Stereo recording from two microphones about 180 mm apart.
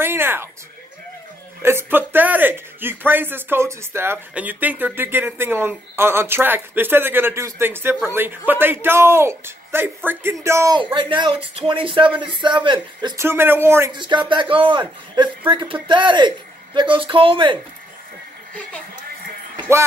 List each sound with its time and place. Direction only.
0.0 s music: 10° right (ahead or behind)
1.6 s speech: 15° right (ahead or behind)
10.8 s a man's voice: 30° right (ahead or behind)
13.9 s a man's voice: 25° right (ahead or behind)